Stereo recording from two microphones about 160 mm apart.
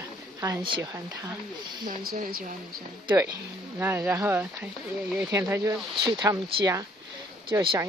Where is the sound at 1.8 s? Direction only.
65° right (ahead or behind).